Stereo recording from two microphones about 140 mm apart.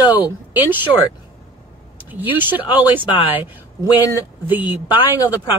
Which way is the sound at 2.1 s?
15° right (ahead or behind).